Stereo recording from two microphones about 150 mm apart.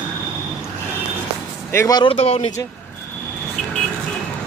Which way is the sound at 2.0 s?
45° left (ahead or behind).